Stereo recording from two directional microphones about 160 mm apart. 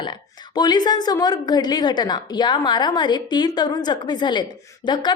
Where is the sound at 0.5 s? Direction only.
25° left (ahead or behind).